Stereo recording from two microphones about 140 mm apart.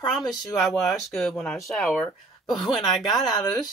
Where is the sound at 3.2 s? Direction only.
30° left (ahead or behind).